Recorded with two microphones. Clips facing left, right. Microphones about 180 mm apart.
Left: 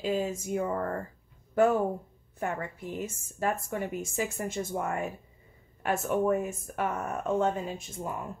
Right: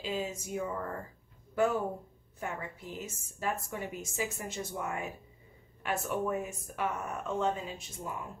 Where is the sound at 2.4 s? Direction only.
55° left (ahead or behind).